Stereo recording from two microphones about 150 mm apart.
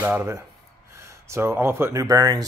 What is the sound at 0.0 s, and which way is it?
Speech, 15° right (ahead or behind).